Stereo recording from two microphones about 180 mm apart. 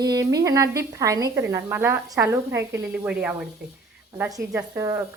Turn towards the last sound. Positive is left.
turn(degrees=-15)  # may be behind; listen again after turning